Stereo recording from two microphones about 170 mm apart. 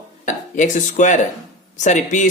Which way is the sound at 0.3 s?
45° left (ahead or behind).